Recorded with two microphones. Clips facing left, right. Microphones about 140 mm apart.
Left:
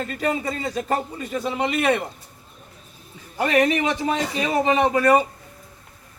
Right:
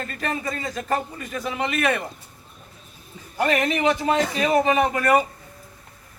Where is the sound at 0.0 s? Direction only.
15° left (ahead or behind).